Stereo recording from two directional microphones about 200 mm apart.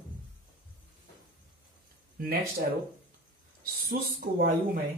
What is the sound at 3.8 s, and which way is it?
Speech, 50° right (ahead or behind).